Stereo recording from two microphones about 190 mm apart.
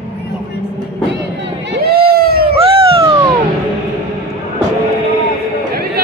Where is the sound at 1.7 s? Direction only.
55° right (ahead or behind).